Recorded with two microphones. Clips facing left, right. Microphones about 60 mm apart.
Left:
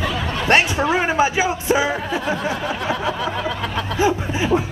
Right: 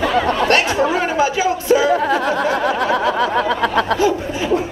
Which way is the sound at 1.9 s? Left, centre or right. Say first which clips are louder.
Right 6 dB; right.